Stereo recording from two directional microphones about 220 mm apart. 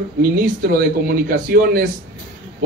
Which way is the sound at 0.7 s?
40° right (ahead or behind).